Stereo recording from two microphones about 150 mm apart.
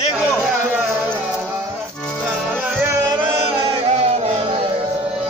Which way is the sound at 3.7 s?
40° right (ahead or behind).